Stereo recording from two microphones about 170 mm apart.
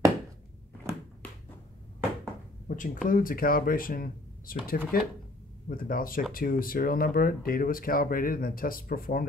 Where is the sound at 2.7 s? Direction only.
50° left (ahead or behind).